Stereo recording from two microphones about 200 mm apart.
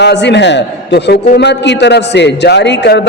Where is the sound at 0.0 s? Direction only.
60° left (ahead or behind).